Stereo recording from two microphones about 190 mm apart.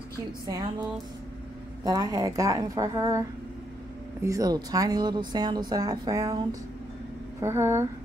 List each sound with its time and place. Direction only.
0.5 s speech: 20° right (ahead or behind)
1.9 s a woman's voice: 20° right (ahead or behind)